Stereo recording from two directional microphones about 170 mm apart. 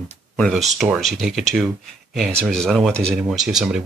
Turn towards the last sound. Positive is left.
turn(degrees=-5)  # may be behind; listen again after turning